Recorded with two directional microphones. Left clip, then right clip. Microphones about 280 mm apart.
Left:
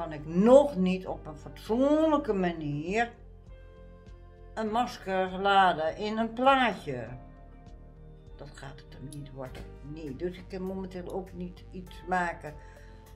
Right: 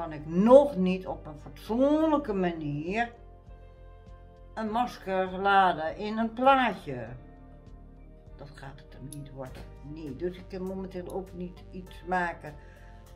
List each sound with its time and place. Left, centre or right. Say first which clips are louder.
0.0 s speech: left 2 dB; centre
4.6 s speech: even; centre
8.4 s speech: even; centre